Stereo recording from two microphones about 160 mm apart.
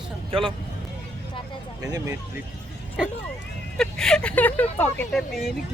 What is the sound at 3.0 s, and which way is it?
A woman's voice, 5° right (ahead or behind).